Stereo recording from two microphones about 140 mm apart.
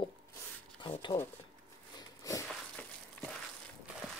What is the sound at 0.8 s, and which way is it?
Speech, 35° left (ahead or behind).